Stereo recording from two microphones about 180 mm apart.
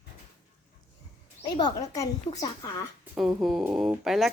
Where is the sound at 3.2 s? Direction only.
Centre (ahead or behind).